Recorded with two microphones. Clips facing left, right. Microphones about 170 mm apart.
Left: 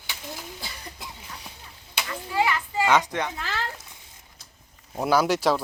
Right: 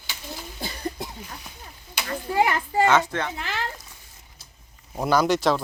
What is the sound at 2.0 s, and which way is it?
Speech, 45° right (ahead or behind).